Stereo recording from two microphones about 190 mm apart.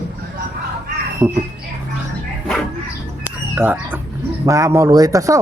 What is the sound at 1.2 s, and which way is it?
Speech, 10° right (ahead or behind).